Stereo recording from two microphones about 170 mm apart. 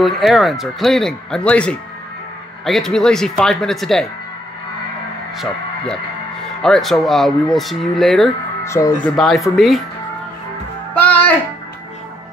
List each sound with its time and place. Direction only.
0.0 s speech: centre (ahead or behind)
6.6 s speech: centre (ahead or behind)
8.6 s speech: 15° left (ahead or behind)
9.0 s speech: centre (ahead or behind)
11.0 s music: 10° left (ahead or behind)